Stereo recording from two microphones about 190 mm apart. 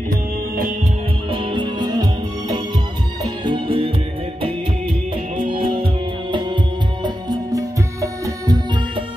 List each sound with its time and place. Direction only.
0.1 s music: 50° right (ahead or behind)
1.3 s music: 25° right (ahead or behind)